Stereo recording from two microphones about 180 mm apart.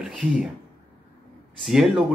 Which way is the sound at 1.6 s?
Centre (ahead or behind).